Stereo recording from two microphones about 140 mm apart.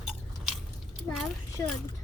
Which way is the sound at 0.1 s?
Centre (ahead or behind).